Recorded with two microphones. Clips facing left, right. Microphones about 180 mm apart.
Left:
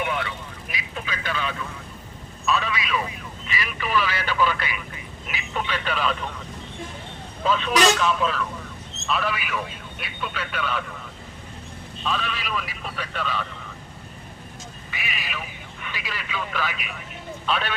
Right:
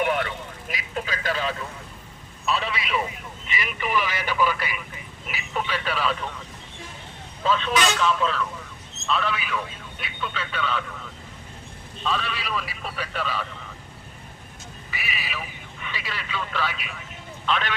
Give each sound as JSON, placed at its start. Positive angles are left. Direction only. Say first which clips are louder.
{"t": 0.0, "sound": "vehicle", "louder": "right 3 dB", "side_deg": -50}
{"t": 2.5, "sound": "speech", "louder": "left 1 dB", "side_deg": -30}
{"t": 7.4, "sound": "speech", "louder": "left 3 dB", "side_deg": 0}
{"t": 12.0, "sound": "speech", "louder": "even", "side_deg": 0}
{"t": 14.8, "sound": "speech", "louder": "right 1 dB", "side_deg": -5}